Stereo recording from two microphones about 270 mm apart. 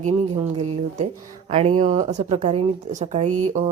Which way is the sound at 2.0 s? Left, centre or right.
Right.